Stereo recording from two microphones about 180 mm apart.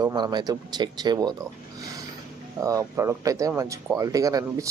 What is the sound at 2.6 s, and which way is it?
A man's voice, 20° right (ahead or behind).